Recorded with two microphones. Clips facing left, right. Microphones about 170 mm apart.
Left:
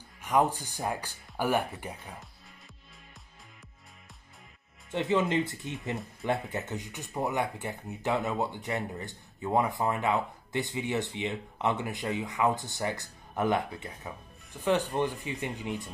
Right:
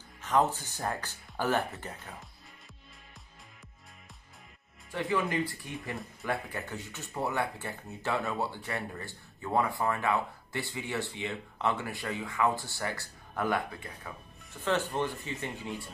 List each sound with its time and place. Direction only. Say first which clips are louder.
0.2 s speech: left 1 dB; 10° left (ahead or behind)
4.9 s speech: left 4 dB; 20° left (ahead or behind)